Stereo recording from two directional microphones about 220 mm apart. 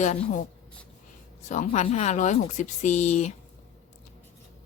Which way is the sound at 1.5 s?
35° left (ahead or behind).